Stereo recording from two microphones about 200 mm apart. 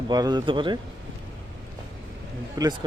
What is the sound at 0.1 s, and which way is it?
Speech, 20° right (ahead or behind).